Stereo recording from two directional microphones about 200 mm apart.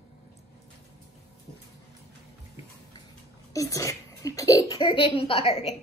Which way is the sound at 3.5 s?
15° left (ahead or behind).